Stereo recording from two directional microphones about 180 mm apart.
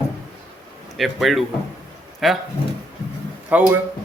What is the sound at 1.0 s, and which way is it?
Speech, centre (ahead or behind).